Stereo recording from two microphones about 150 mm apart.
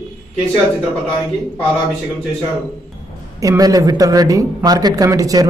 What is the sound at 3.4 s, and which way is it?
Speech, 25° right (ahead or behind).